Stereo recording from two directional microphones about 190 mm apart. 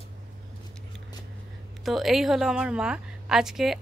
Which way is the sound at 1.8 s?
Centre (ahead or behind).